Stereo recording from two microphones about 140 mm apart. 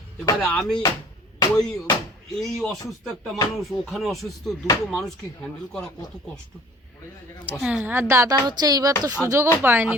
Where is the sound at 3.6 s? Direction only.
Centre (ahead or behind).